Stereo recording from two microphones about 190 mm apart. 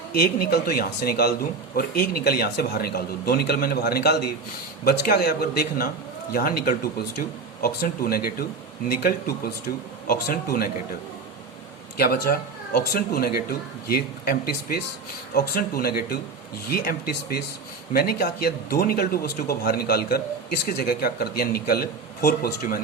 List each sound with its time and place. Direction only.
0.1 s speech: 55° left (ahead or behind)
11.9 s speech: 55° left (ahead or behind)